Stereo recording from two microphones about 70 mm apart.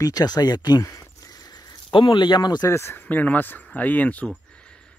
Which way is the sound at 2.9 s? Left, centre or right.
Left.